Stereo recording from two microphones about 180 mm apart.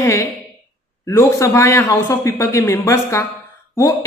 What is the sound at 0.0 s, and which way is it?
A woman's voice, 15° left (ahead or behind).